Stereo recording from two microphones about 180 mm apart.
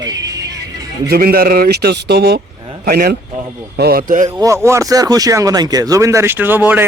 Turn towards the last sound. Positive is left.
turn(degrees=-10)  # may be behind; listen again after turning